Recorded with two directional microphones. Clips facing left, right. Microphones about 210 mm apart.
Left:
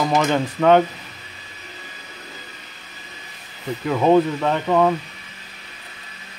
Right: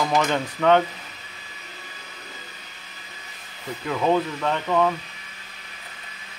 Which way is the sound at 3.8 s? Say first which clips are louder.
Left 6 dB; 35° left (ahead or behind).